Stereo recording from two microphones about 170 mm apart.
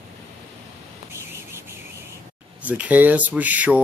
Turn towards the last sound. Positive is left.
turn(degrees=-10)  # may be behind; listen again after turning